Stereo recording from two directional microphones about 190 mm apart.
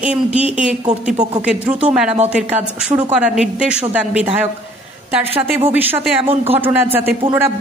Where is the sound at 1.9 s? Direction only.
5° right (ahead or behind).